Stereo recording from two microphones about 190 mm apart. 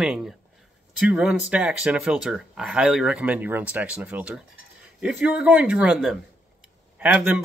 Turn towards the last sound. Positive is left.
turn(degrees=-5)  # may be behind; listen again after turning